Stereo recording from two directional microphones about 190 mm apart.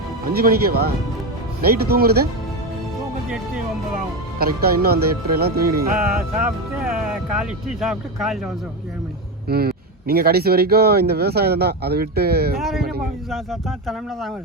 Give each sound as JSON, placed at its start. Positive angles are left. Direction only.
{"t": 0.3, "sound": "speech", "side_deg": -55}
{"t": 4.4, "sound": "speech", "side_deg": -55}
{"t": 7.3, "sound": "speech", "side_deg": 0}
{"t": 9.5, "sound": "speech", "side_deg": -55}
{"t": 12.5, "sound": "speech", "side_deg": 0}